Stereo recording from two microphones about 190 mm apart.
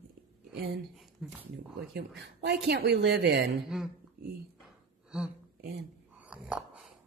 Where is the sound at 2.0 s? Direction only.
65° right (ahead or behind).